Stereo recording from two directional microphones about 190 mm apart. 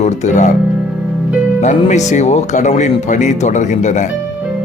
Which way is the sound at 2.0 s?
35° left (ahead or behind).